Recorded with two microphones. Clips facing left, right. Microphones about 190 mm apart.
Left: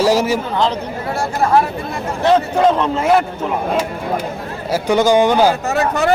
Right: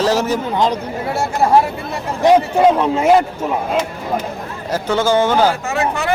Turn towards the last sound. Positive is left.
turn(degrees=40)  # may be behind; listen again after turning